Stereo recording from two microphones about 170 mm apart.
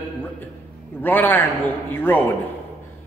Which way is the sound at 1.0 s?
10° left (ahead or behind).